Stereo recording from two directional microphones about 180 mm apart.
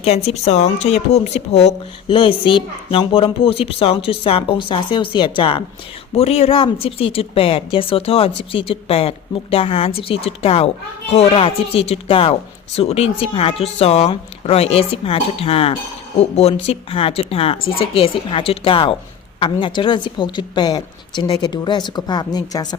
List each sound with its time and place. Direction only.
0.0 s a woman's voice: 35° left (ahead or behind)